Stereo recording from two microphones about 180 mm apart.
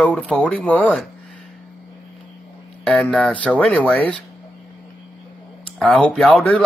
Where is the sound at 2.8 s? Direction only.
5° left (ahead or behind).